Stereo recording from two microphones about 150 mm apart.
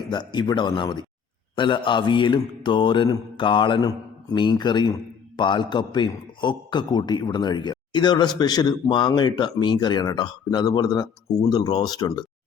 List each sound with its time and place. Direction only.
0.1 s a man's voice: 30° left (ahead or behind)
1.5 s mantra: 35° left (ahead or behind)
5.4 s a man's voice: 30° left (ahead or behind)